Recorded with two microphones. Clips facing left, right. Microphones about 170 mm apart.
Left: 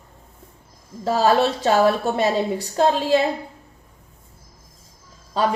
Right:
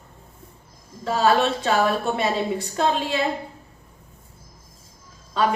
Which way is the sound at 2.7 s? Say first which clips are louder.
Left 7 dB; 40° left (ahead or behind).